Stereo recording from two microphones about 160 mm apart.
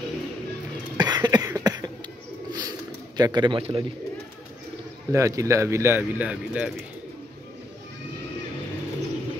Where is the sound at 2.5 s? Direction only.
25° right (ahead or behind).